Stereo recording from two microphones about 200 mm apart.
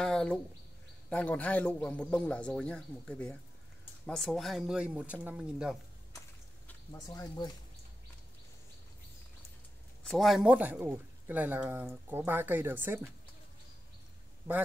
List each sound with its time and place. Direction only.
0.0 s a sound: 5° left (ahead or behind)
1.1 s a man's voice: 5° left (ahead or behind)
7.1 s speech: 20° left (ahead or behind)
10.0 s speech: centre (ahead or behind)